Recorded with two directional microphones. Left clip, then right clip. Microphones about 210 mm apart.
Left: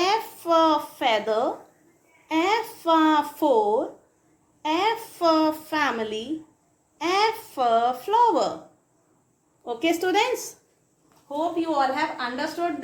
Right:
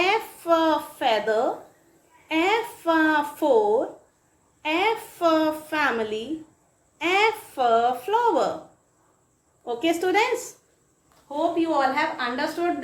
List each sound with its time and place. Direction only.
0.0 s a sound: 25° left (ahead or behind)
4.6 s a woman's voice: 25° left (ahead or behind)
9.6 s a woman's voice: 25° left (ahead or behind)
11.3 s a woman's voice: 10° left (ahead or behind)